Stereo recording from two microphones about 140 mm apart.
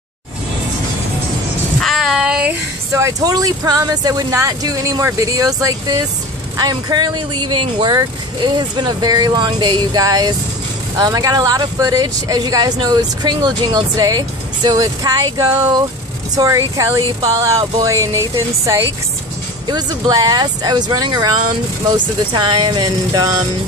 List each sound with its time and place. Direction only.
1.8 s child singing: centre (ahead or behind)
2.9 s speech: 25° right (ahead or behind)